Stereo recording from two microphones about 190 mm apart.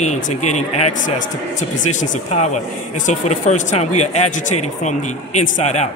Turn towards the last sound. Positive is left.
turn(degrees=35)  # may be behind; listen again after turning